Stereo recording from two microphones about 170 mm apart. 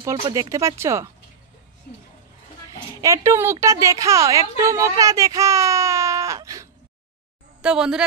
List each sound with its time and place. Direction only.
0.0 s speech: 20° right (ahead or behind)
3.0 s a woman's voice: 15° right (ahead or behind)
7.6 s a woman's voice: 5° right (ahead or behind)